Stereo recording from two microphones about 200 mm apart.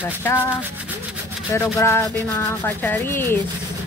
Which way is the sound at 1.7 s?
15° left (ahead or behind).